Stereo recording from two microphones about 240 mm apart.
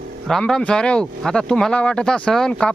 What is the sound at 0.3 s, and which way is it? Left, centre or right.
Speech, centre.